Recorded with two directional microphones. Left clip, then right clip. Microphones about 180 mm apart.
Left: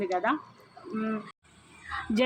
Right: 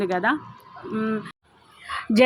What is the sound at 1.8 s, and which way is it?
Honk, 30° right (ahead or behind).